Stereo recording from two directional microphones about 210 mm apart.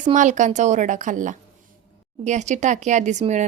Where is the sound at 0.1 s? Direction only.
35° right (ahead or behind).